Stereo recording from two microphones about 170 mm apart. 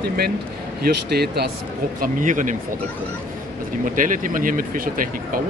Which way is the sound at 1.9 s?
50° right (ahead or behind).